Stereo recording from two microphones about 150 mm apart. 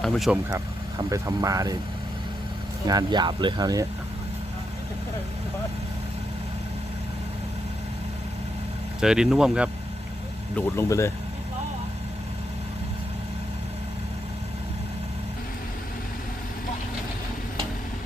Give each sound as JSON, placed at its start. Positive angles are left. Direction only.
{"t": 0.0, "sound": "speech", "side_deg": 0}
{"t": 1.1, "sound": "speech", "side_deg": -25}
{"t": 2.8, "sound": "speech", "side_deg": -30}
{"t": 9.0, "sound": "speech", "side_deg": -5}
{"t": 10.5, "sound": "speech", "side_deg": 20}